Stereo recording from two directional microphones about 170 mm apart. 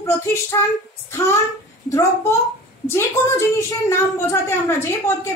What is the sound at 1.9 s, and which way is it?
A child's voice, 15° left (ahead or behind).